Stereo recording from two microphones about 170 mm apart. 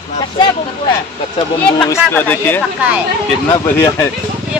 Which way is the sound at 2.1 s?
10° left (ahead or behind).